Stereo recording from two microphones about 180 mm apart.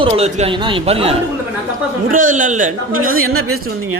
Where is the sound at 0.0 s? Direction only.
35° right (ahead or behind).